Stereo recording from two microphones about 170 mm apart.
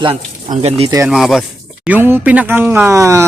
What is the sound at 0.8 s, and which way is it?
Speech, 20° right (ahead or behind).